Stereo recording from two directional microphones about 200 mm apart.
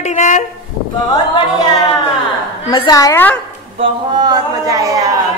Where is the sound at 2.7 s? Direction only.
20° left (ahead or behind).